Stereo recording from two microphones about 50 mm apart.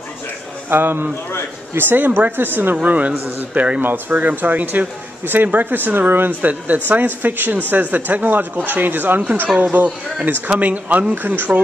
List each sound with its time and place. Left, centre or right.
0.7 s speech: right
2.8 s speech: right